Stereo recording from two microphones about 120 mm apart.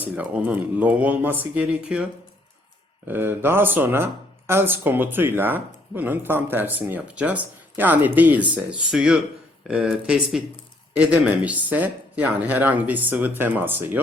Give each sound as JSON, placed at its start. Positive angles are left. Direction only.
{"t": 0.0, "sound": "speech", "side_deg": -10}
{"t": 3.1, "sound": "speech", "side_deg": -20}